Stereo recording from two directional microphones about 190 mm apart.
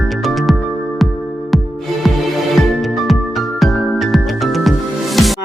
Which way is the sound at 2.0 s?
Centre (ahead or behind).